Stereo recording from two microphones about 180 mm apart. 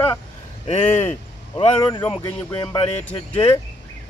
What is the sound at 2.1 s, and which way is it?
Speech, 25° left (ahead or behind).